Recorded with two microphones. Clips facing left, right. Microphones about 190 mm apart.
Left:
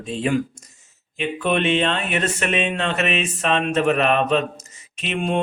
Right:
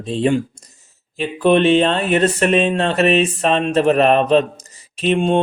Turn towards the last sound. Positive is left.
turn(degrees=-35)  # may be behind; listen again after turning